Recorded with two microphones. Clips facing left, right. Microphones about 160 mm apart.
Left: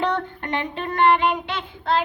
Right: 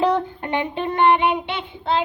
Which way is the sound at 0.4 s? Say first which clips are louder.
Right 3 dB; 10° right (ahead or behind).